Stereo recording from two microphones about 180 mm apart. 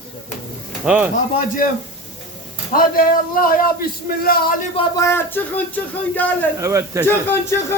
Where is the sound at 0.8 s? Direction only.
5° right (ahead or behind).